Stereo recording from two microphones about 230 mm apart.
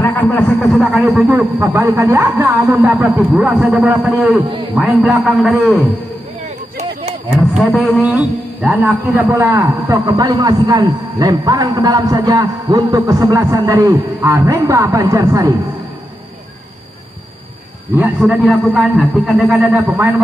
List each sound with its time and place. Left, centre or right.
0.0 s a man's voice: centre
6.8 s a sound: right
7.2 s a man's voice: centre
10.0 s a man's voice: centre
17.9 s a man's voice: centre